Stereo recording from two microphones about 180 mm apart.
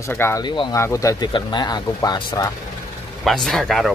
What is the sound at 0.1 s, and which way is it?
Speech, 15° left (ahead or behind).